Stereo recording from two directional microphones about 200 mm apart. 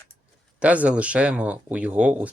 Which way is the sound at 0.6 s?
5° right (ahead or behind).